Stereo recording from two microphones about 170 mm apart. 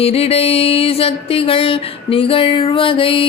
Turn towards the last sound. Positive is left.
turn(degrees=30)  # may be behind; listen again after turning